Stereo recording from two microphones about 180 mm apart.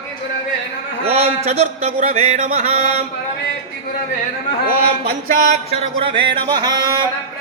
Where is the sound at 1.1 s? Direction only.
35° right (ahead or behind).